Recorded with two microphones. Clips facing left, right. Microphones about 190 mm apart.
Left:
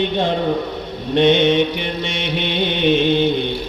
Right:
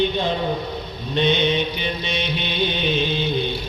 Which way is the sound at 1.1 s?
90° left.